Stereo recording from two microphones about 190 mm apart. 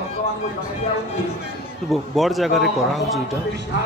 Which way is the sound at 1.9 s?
Centre (ahead or behind).